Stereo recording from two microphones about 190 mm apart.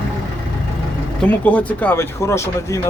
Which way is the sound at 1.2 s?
10° left (ahead or behind).